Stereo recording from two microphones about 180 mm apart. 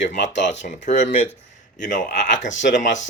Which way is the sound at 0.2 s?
80° left.